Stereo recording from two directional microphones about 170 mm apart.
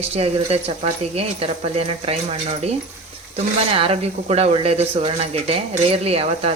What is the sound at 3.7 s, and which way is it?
Speech, 35° right (ahead or behind).